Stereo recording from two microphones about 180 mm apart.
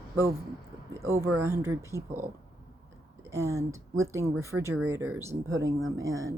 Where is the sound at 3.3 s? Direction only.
15° right (ahead or behind).